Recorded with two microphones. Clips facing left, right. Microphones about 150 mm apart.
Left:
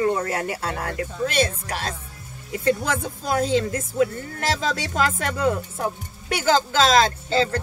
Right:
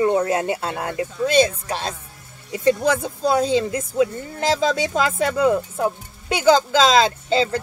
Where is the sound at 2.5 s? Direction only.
20° right (ahead or behind).